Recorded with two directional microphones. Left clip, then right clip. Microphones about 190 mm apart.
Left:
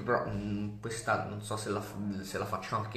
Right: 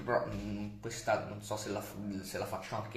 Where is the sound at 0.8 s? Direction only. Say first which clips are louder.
Left 1 dB; 15° right (ahead or behind).